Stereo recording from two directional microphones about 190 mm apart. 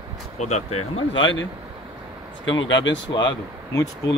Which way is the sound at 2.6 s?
75° left (ahead or behind).